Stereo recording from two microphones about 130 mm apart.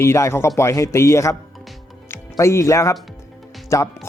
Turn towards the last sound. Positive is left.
turn(degrees=25)  # may be behind; listen again after turning